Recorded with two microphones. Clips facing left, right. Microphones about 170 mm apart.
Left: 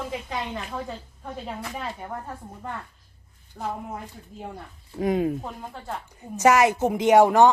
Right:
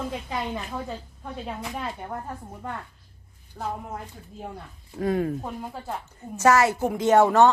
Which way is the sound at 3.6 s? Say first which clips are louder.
Even; centre (ahead or behind).